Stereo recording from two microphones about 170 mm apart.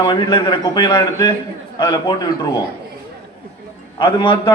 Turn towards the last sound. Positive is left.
turn(degrees=30)  # may be behind; listen again after turning